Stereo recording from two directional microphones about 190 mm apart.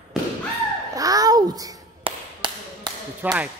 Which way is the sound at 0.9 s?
20° right (ahead or behind).